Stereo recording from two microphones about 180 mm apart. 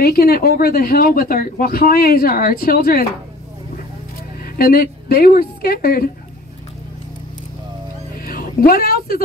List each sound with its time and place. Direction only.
0.0 s speech: 60° left (ahead or behind)
4.6 s speech: 55° left (ahead or behind)
8.3 s cat: 55° left (ahead or behind)